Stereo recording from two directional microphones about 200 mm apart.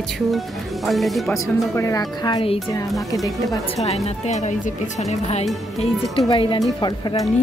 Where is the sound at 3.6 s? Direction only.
30° left (ahead or behind).